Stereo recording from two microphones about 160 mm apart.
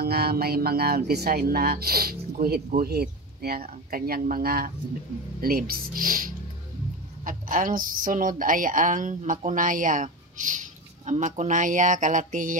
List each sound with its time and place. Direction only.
0.0 s speech: 75° right (ahead or behind); by 12.5 s 55° right (ahead or behind)